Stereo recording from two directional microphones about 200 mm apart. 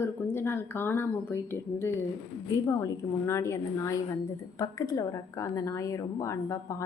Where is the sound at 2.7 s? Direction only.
15° left (ahead or behind).